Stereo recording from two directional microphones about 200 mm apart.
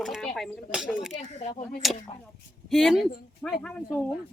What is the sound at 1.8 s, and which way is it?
A woman's voice, centre (ahead or behind).